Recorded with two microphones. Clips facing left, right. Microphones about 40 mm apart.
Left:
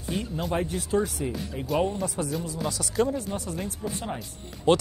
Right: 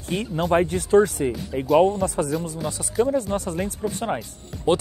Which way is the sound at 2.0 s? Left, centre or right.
Right.